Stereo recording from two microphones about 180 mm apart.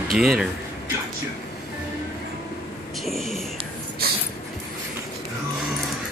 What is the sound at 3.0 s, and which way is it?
Whispering, centre (ahead or behind).